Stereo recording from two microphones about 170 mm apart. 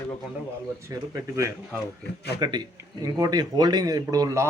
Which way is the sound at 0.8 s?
15° right (ahead or behind).